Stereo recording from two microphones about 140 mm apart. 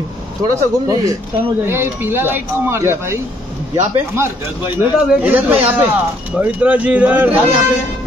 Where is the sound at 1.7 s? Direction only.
15° right (ahead or behind).